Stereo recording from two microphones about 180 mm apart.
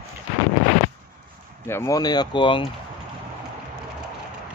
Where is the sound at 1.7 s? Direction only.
15° left (ahead or behind).